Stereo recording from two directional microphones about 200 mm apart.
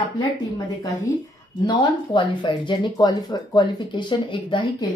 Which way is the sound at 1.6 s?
25° left (ahead or behind).